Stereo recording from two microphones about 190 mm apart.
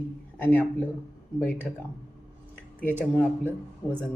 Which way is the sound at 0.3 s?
10° left (ahead or behind).